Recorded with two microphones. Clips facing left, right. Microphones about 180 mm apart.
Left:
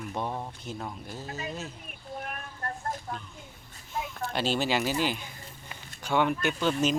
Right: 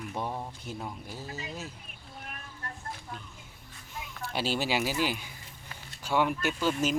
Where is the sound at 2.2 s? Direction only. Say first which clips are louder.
Left 5 dB; 50° left (ahead or behind).